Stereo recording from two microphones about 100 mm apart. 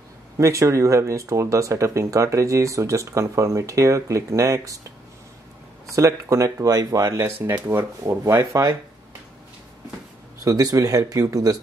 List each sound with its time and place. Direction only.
0.4 s speech: 30° right (ahead or behind)
10.4 s speech: 35° right (ahead or behind)